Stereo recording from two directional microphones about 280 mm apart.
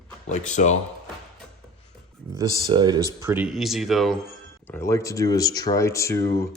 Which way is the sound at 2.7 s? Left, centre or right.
Centre.